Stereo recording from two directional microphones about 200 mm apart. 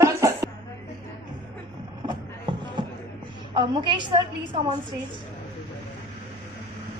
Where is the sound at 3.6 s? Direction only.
25° right (ahead or behind).